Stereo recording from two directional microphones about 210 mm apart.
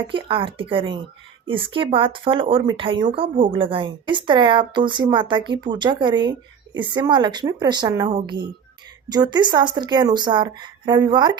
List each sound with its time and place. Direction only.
0.1 s speech: 25° right (ahead or behind)